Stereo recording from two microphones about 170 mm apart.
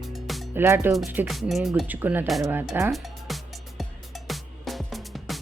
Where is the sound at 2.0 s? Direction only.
10° right (ahead or behind).